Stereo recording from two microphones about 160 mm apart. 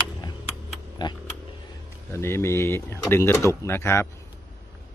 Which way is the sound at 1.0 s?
25° left (ahead or behind).